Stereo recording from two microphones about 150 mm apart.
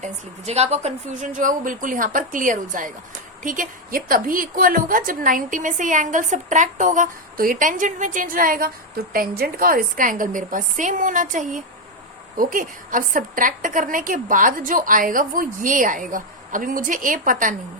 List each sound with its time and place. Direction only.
0.0 s a woman's voice: 45° right (ahead or behind); by 17.5 s 65° right (ahead or behind)